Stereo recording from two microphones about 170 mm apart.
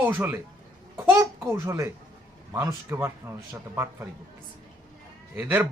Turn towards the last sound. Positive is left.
turn(degrees=-10)  # may be behind; listen again after turning